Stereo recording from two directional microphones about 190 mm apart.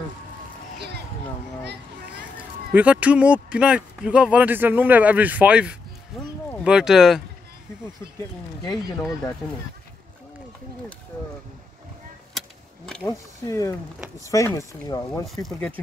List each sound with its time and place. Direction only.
0.7 s a sound: 60° right (ahead or behind)
2.7 s speech: 5° right (ahead or behind)
12.4 s keys jangling: 5° left (ahead or behind)
13.0 s speech: 15° left (ahead or behind)
15.2 s speech: centre (ahead or behind)